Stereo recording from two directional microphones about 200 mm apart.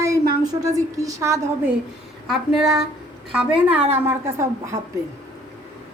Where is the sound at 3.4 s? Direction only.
10° right (ahead or behind).